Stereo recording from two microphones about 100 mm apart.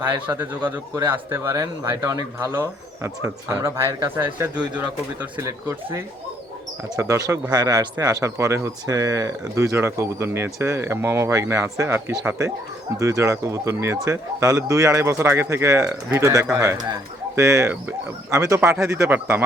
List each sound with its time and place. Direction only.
0.3 s speech: 30° right (ahead or behind); by 5.3 s 15° right (ahead or behind)
5.4 s speech: 25° right (ahead or behind)